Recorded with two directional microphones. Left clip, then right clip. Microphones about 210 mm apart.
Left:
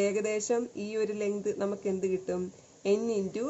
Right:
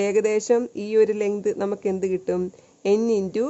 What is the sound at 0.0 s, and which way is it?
Speech, 45° right (ahead or behind).